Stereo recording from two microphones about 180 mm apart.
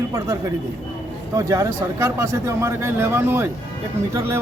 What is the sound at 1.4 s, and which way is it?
Speech, 15° right (ahead or behind).